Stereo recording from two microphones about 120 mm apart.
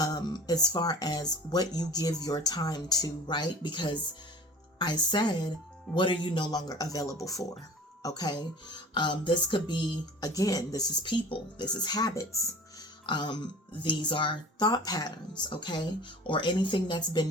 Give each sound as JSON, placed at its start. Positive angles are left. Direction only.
{"t": 0.0, "sound": "speech", "side_deg": 35}